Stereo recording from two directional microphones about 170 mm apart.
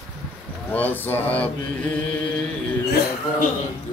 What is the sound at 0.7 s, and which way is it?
Speech, 10° left (ahead or behind).